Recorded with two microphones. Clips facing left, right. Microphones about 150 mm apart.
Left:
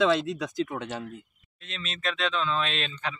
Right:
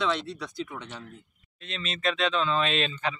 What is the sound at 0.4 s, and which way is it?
Speech, 45° left (ahead or behind).